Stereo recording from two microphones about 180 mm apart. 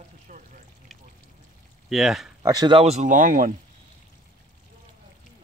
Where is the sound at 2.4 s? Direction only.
20° right (ahead or behind); by 3.5 s 50° right (ahead or behind).